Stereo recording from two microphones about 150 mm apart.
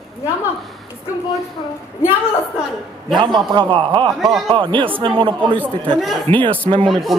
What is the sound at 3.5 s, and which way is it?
Speech, 35° right (ahead or behind).